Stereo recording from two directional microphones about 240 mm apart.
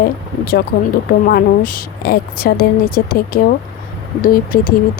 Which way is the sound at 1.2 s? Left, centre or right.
Left.